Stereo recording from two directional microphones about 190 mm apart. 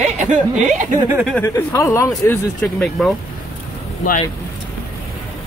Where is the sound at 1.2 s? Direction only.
5° left (ahead or behind).